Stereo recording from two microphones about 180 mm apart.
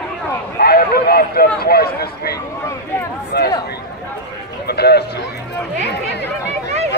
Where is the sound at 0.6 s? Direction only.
60° left (ahead or behind).